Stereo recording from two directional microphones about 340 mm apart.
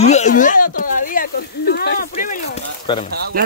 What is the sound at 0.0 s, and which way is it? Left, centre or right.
Speech, centre.